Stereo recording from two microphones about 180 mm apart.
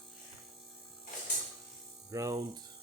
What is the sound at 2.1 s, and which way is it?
Mains hum, 20° right (ahead or behind).